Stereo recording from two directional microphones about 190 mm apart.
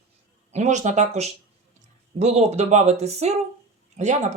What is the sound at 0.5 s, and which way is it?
Speech, 40° right (ahead or behind).